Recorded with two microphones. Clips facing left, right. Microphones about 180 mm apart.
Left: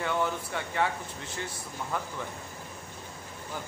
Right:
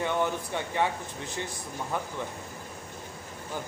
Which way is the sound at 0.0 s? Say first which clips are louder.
Right 2 dB; 20° right (ahead or behind).